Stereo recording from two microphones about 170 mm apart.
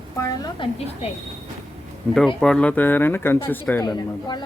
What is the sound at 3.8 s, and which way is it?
Speech, 25° left (ahead or behind).